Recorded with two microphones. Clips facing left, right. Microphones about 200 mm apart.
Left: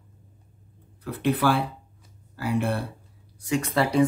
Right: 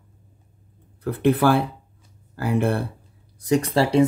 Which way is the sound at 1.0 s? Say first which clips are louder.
Right 5 dB; 50° right (ahead or behind).